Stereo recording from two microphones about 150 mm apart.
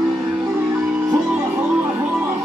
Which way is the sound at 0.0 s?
Centre (ahead or behind).